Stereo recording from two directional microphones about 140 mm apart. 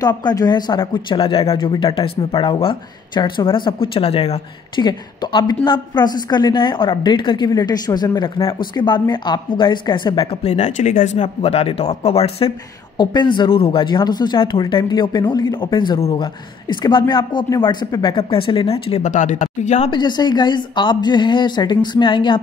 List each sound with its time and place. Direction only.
0.0 s speech: 30° left (ahead or behind); by 4.4 s 45° left (ahead or behind)
4.7 s speech: 35° left (ahead or behind); by 19.9 s 60° left (ahead or behind)
19.9 s speech: 30° left (ahead or behind)